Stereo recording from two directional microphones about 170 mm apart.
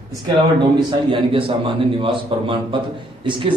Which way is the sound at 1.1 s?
30° right (ahead or behind).